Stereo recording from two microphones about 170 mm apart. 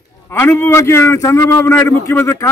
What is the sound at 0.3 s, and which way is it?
Speech, 15° left (ahead or behind).